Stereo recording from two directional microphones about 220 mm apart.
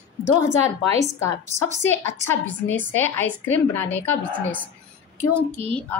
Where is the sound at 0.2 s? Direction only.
10° left (ahead or behind).